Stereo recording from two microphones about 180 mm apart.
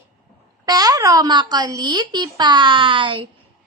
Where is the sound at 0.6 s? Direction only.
20° right (ahead or behind).